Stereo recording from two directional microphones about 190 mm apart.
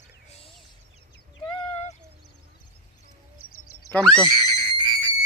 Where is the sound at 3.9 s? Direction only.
5° left (ahead or behind).